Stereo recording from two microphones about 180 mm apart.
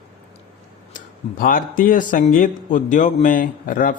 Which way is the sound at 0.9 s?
50° left (ahead or behind).